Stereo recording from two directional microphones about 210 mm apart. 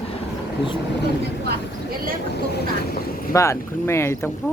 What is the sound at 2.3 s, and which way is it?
Speech, 50° left (ahead or behind).